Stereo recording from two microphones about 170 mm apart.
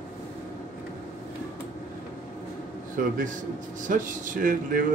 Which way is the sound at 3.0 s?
50° right (ahead or behind).